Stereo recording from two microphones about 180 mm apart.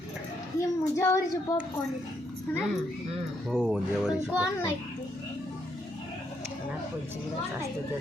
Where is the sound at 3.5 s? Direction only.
5° right (ahead or behind).